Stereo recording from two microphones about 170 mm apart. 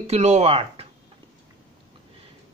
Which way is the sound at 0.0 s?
40° right (ahead or behind).